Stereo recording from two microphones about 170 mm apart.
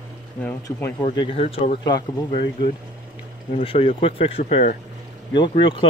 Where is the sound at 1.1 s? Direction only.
35° left (ahead or behind).